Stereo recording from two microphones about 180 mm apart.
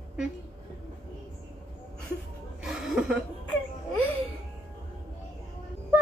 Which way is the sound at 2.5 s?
5° right (ahead or behind).